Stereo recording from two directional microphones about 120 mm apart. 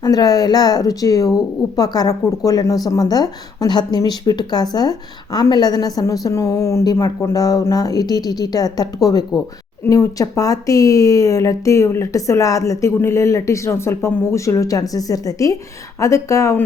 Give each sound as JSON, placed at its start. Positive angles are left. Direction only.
{"t": 0.0, "sound": "speech", "side_deg": 30}